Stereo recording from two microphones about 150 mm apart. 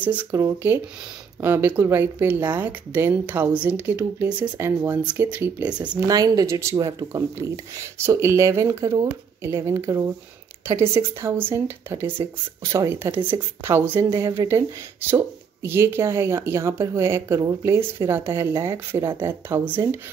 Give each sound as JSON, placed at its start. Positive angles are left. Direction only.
{"t": 0.0, "sound": "speech", "side_deg": -10}
{"t": 6.0, "sound": "speech", "side_deg": -25}
{"t": 15.6, "sound": "speech", "side_deg": -15}